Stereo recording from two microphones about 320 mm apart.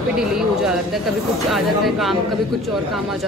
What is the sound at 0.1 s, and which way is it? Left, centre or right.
Speech, centre.